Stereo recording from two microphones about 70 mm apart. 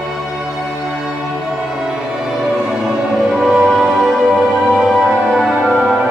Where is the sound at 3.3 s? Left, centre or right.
Centre.